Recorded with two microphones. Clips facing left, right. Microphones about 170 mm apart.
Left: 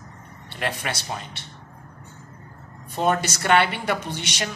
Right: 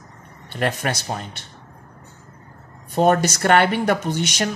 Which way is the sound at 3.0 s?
45° right (ahead or behind).